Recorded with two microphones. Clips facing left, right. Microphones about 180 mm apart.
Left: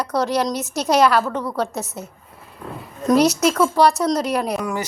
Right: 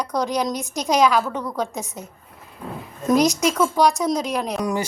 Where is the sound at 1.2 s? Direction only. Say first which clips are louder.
Left 2 dB; 5° left (ahead or behind).